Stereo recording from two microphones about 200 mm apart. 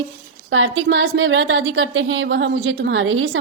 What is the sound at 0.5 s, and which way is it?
A woman's voice, 75° right (ahead or behind).